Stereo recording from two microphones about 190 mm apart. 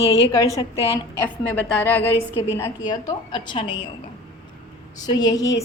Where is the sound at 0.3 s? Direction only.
20° left (ahead or behind).